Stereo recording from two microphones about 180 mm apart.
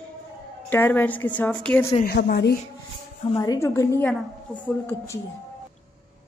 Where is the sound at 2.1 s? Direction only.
65° left (ahead or behind).